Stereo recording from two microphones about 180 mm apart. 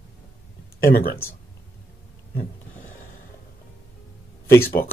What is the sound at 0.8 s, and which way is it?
Speech, 55° left (ahead or behind).